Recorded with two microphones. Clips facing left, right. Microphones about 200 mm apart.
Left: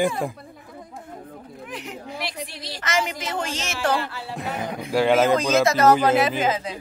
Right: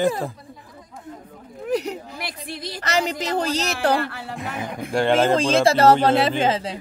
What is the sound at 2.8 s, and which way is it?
A woman's voice, 35° right (ahead or behind).